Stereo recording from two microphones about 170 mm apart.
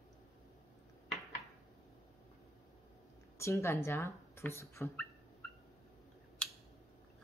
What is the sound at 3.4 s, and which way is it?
Speech, 15° left (ahead or behind).